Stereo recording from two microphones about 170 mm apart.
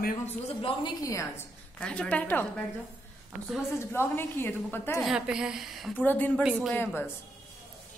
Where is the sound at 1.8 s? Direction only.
5° left (ahead or behind).